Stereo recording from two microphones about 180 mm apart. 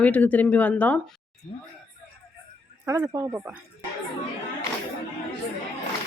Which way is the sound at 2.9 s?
20° right (ahead or behind).